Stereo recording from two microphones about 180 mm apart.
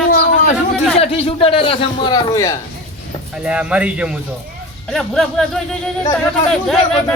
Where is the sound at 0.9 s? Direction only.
35° left (ahead or behind).